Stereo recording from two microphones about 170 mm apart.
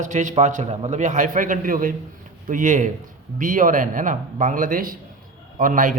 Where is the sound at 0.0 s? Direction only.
45° right (ahead or behind).